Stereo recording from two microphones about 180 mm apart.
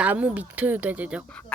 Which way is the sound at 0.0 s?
10° right (ahead or behind).